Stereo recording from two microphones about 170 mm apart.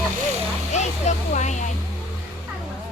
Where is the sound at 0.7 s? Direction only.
45° left (ahead or behind).